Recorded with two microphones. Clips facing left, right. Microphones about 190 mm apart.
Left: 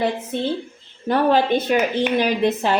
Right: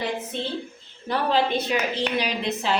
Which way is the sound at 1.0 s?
50° left (ahead or behind).